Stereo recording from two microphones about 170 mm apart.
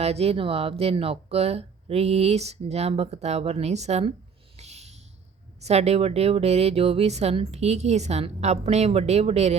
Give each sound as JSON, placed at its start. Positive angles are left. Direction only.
{"t": 0.0, "sound": "speech", "side_deg": -35}
{"t": 4.5, "sound": "a sound", "side_deg": -40}
{"t": 5.5, "sound": "speech", "side_deg": -40}